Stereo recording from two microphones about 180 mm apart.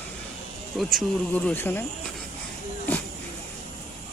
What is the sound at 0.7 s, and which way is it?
Speech, 5° left (ahead or behind).